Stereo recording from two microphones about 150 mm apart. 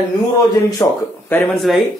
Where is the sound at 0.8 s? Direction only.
20° left (ahead or behind).